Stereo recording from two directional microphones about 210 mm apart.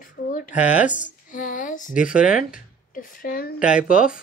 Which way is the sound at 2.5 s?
40° left (ahead or behind).